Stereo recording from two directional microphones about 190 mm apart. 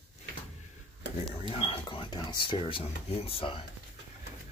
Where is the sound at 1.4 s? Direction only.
30° left (ahead or behind).